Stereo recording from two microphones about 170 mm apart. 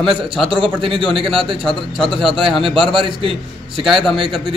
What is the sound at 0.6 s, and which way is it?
A man's voice, 30° right (ahead or behind).